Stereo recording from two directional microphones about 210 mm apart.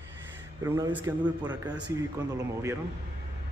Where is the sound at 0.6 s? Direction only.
15° right (ahead or behind).